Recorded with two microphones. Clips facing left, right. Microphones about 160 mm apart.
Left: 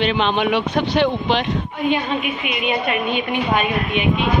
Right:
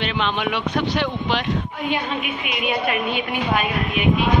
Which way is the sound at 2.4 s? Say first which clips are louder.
Left 2 dB; centre (ahead or behind).